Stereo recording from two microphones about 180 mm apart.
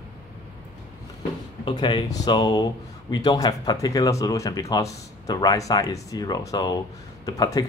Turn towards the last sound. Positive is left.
turn(degrees=20)  # may be behind; listen again after turning